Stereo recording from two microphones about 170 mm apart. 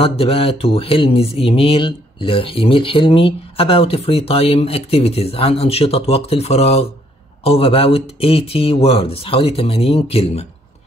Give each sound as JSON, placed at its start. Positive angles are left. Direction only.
{"t": 0.0, "sound": "speech", "side_deg": 35}